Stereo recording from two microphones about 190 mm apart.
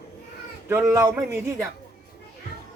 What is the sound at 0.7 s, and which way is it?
Speech, 15° right (ahead or behind).